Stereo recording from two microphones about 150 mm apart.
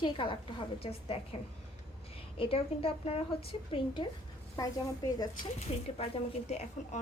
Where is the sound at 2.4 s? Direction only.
40° left (ahead or behind).